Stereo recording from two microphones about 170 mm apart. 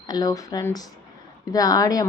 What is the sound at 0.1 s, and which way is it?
A woman's voice, 20° left (ahead or behind).